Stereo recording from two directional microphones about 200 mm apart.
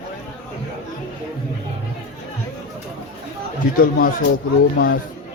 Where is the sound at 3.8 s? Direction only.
45° left (ahead or behind).